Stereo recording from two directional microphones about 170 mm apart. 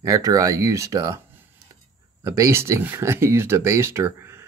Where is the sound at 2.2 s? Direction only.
15° right (ahead or behind).